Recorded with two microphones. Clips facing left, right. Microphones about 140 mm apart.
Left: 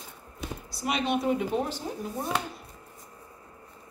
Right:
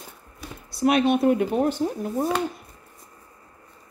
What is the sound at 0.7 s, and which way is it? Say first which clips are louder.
Speech: right 9 dB; 55° right (ahead or behind).